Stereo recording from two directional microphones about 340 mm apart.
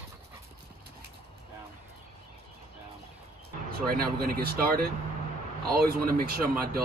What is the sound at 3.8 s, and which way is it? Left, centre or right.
Speech, right.